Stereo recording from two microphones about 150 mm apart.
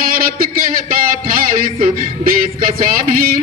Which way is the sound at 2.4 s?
75° right (ahead or behind).